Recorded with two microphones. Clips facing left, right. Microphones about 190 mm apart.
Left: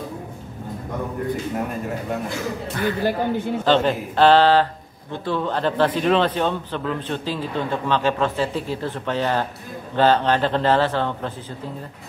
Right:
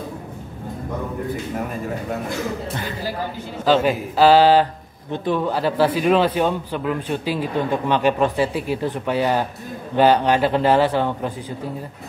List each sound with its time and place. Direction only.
3.0 s speech: 55° left (ahead or behind)
3.6 s a man's voice: 5° right (ahead or behind)